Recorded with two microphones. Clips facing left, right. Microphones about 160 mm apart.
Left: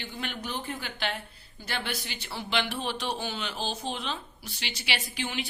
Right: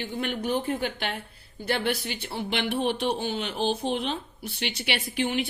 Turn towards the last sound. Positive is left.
turn(degrees=-55)  # may be behind; listen again after turning